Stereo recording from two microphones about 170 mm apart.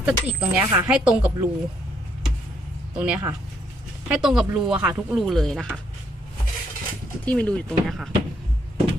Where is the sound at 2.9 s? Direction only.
5° right (ahead or behind).